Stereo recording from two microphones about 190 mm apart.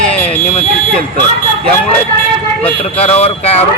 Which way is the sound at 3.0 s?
35° left (ahead or behind).